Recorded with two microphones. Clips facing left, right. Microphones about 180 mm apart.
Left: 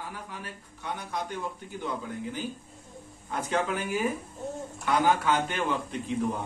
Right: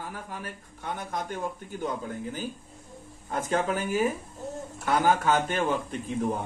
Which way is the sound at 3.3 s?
45° right (ahead or behind).